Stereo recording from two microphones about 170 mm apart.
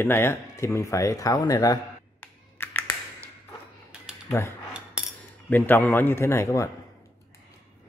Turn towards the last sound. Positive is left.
turn(degrees=15)  # may be behind; listen again after turning